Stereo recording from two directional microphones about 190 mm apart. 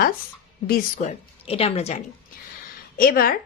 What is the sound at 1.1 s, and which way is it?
Speech, 30° left (ahead or behind).